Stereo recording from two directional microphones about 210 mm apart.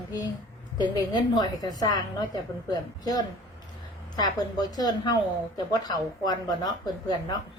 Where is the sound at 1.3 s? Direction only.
20° left (ahead or behind).